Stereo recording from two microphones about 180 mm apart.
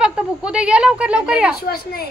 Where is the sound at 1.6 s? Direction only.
60° left (ahead or behind).